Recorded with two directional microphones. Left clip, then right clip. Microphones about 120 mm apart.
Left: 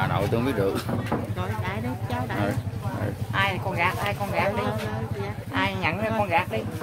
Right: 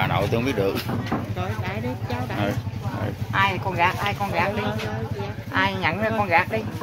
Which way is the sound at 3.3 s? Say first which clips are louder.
Right 4 dB; 5° right (ahead or behind).